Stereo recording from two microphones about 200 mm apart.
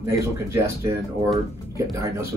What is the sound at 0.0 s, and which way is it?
Speech, 15° right (ahead or behind).